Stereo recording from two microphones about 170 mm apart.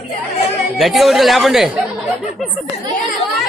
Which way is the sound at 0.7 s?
Centre (ahead or behind).